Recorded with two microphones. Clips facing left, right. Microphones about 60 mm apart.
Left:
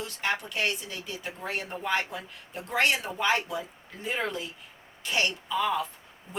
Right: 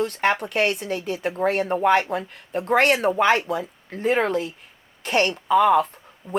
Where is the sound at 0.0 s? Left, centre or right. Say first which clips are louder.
Right 9 dB; right.